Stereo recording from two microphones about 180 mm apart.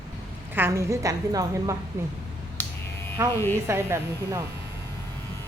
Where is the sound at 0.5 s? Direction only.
15° right (ahead or behind).